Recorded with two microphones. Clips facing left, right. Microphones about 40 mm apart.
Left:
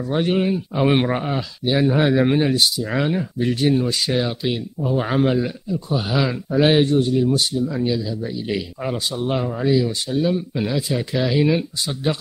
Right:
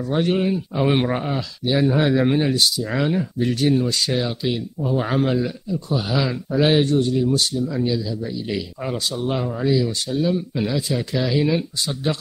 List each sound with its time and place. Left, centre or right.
0.1 s a man's voice: centre